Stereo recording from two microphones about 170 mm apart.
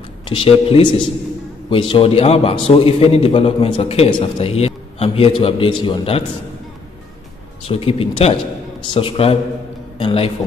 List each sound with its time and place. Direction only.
0.3 s a man's voice: 35° left (ahead or behind)
7.6 s a man's voice: 35° left (ahead or behind)